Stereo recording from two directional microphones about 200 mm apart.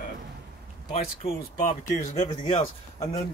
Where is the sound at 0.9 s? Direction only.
40° left (ahead or behind).